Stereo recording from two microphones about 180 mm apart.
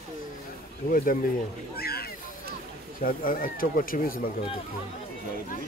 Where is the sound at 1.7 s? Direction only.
60° left (ahead or behind).